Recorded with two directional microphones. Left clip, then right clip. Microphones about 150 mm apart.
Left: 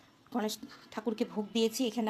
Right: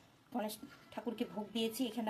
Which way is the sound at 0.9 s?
15° left (ahead or behind).